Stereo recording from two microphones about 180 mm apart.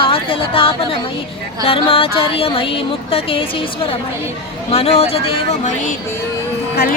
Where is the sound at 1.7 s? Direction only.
30° left (ahead or behind).